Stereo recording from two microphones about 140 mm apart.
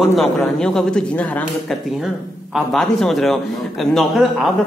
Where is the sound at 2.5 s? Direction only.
Centre (ahead or behind).